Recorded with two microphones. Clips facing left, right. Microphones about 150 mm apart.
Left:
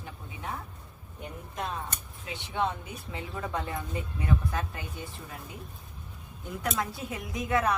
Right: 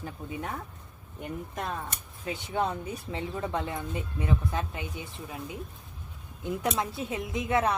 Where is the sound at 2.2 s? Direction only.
40° right (ahead or behind); by 4.9 s 20° right (ahead or behind).